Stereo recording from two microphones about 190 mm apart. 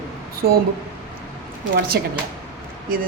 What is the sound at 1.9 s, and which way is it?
Speech, 60° right (ahead or behind).